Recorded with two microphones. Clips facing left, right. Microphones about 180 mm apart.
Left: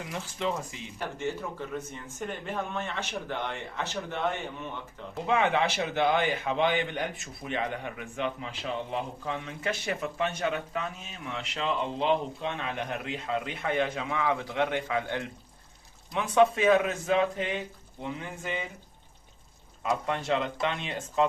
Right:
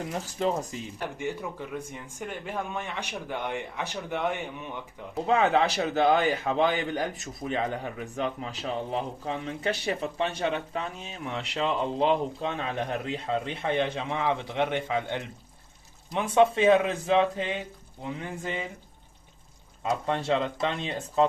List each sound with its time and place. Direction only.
0.0 s a man's voice: 40° right (ahead or behind)
0.9 s speech: 15° right (ahead or behind)
5.2 s a man's voice: 35° right (ahead or behind)
19.8 s a man's voice: 30° right (ahead or behind)